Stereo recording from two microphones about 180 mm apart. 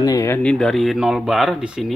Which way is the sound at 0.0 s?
20° left (ahead or behind).